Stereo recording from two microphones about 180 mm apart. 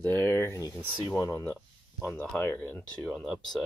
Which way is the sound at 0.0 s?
15° left (ahead or behind).